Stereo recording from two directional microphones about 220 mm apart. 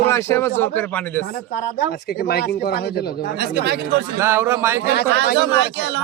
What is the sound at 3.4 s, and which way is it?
Speech, 50° right (ahead or behind).